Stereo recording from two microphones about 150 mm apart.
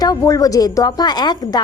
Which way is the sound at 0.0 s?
25° left (ahead or behind).